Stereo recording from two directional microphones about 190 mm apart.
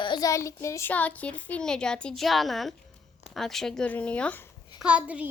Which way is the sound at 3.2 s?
Centre (ahead or behind).